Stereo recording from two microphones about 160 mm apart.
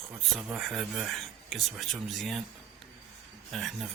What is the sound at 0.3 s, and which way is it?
Speech, centre (ahead or behind).